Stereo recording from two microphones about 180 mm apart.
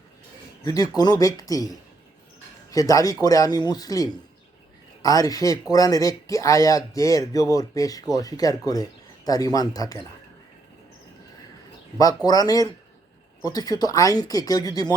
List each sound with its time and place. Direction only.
0.6 s speech: 20° left (ahead or behind)
11.9 s speech: 20° left (ahead or behind)